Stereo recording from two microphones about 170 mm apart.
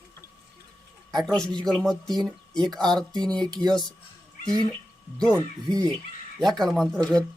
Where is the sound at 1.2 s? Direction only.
5° left (ahead or behind).